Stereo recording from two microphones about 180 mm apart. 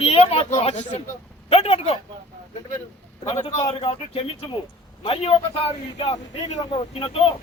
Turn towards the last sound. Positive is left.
turn(degrees=30)  # may be behind; listen again after turning